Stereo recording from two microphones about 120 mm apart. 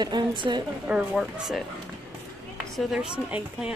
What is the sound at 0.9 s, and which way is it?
Speech, 10° right (ahead or behind).